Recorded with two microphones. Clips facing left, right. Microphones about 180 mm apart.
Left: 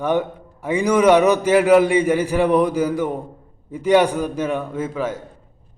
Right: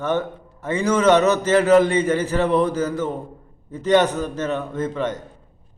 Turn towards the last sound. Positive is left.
turn(degrees=5)  # may be behind; listen again after turning